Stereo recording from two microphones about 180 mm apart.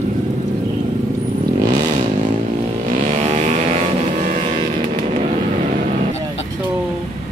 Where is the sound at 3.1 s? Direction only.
40° right (ahead or behind).